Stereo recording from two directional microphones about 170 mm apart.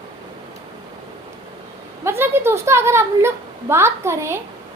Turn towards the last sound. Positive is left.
turn(degrees=-15)  # may be behind; listen again after turning